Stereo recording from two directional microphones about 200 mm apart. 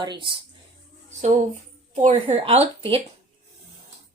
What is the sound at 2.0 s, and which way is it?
Speech, 30° right (ahead or behind).